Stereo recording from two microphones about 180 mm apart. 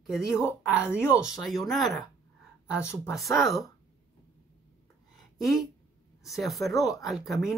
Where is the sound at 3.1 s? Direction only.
Centre (ahead or behind).